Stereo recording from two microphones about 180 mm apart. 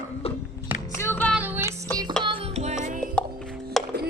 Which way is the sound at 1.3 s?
10° right (ahead or behind).